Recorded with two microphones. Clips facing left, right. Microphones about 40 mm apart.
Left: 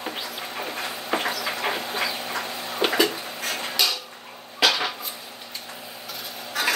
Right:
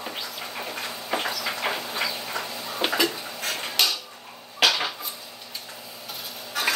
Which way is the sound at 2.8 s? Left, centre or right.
Left.